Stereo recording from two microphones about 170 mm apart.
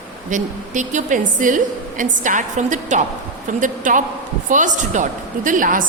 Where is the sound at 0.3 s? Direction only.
45° right (ahead or behind).